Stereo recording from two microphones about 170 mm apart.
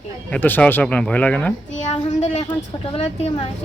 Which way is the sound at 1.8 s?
40° left (ahead or behind).